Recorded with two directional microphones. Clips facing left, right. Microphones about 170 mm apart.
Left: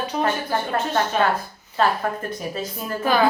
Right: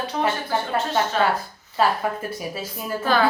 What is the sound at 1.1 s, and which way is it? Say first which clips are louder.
Speech: left 1 dB; 15° left (ahead or behind).